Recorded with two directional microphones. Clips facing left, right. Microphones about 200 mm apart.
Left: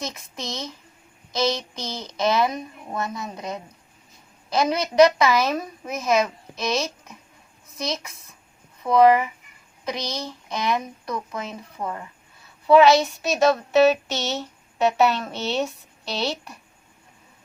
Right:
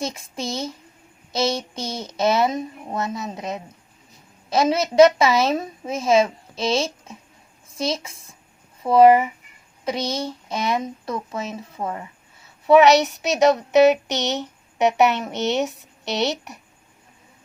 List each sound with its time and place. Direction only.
0.0 s a woman's voice: 30° right (ahead or behind)